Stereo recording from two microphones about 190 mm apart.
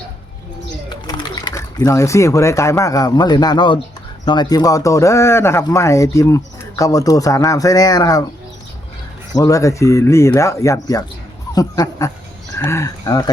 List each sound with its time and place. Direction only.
0.9 s speech: 20° left (ahead or behind)
9.3 s speech: 15° left (ahead or behind)